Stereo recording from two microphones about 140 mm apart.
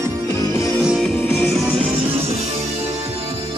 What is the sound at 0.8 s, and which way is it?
Music, centre (ahead or behind).